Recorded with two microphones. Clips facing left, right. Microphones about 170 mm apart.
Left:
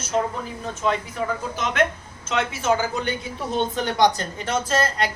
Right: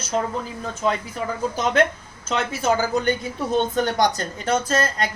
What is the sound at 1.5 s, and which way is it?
Speech, 35° right (ahead or behind).